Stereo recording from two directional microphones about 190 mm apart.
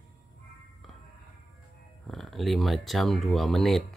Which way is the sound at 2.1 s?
Centre (ahead or behind).